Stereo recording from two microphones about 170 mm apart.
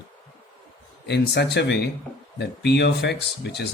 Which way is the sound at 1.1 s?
80° left.